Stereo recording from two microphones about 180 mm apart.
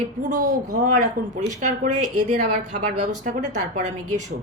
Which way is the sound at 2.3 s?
45° right (ahead or behind).